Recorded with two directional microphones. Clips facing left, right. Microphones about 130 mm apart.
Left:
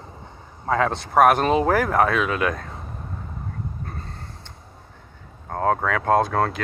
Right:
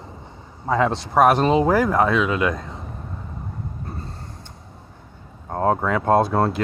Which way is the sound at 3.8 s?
30° right (ahead or behind).